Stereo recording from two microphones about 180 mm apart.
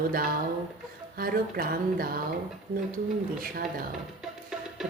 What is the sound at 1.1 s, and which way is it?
Speech, 55° right (ahead or behind).